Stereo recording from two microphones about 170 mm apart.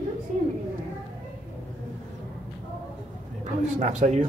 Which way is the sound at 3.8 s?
45° right (ahead or behind).